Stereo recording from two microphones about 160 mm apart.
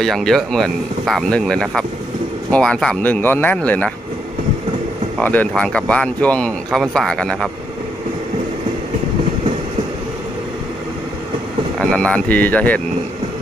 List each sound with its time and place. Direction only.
0.0 s speech: centre (ahead or behind)
5.2 s speech: 10° left (ahead or behind)
11.8 s speech: 5° left (ahead or behind)